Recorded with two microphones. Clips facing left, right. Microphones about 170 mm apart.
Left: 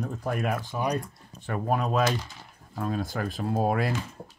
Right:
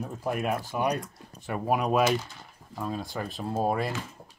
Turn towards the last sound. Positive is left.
turn(degrees=0)  # may be behind; listen again after turning